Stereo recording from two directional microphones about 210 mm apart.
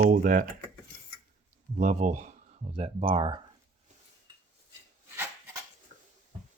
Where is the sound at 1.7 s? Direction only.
35° right (ahead or behind).